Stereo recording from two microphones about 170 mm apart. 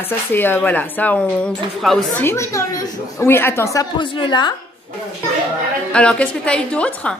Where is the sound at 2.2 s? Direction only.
15° left (ahead or behind).